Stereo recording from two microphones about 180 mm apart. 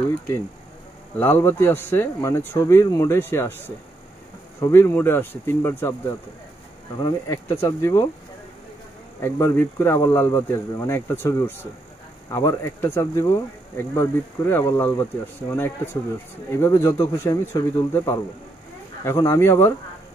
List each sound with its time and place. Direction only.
1.2 s speech: 10° left (ahead or behind)
7.0 s speech: 20° left (ahead or behind)
9.2 s speech: 15° left (ahead or behind)